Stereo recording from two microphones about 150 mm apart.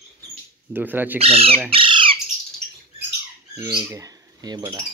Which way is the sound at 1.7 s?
35° right (ahead or behind).